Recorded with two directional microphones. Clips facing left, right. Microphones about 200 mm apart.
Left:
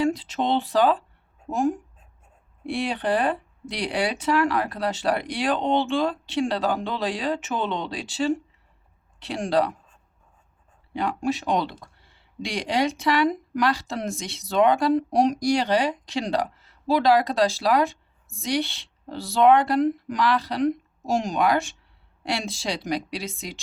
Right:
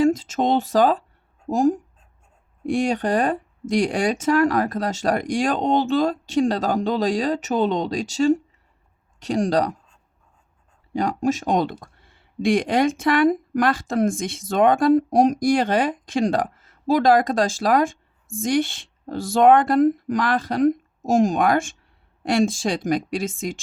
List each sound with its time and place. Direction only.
0.0 s speech: 45° right (ahead or behind)
10.9 s speech: 40° right (ahead or behind)